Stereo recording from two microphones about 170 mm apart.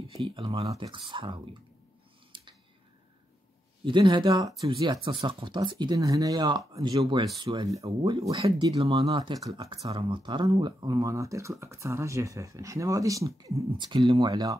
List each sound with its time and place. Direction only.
0.3 s speech: 35° right (ahead or behind)
2.3 s a sound: 30° right (ahead or behind)
3.8 s speech: 30° right (ahead or behind)
9.5 s speech: 35° right (ahead or behind)